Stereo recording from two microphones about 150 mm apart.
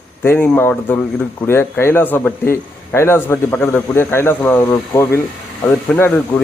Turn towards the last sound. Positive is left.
turn(degrees=15)  # may be behind; listen again after turning